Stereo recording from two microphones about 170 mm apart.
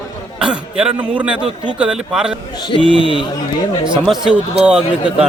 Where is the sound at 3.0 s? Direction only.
30° left (ahead or behind).